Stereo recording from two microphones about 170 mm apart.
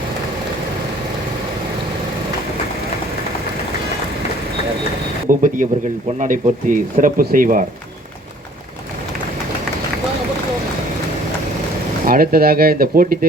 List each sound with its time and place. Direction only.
5.3 s speech: 50° right (ahead or behind)
12.0 s speech: 60° right (ahead or behind)